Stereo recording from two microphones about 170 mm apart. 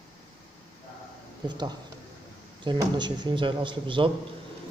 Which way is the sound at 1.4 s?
25° right (ahead or behind).